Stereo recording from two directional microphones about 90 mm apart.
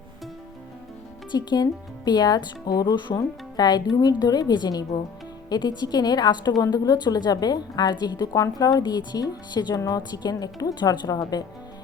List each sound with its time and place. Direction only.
1.3 s a woman's voice: 55° left (ahead or behind)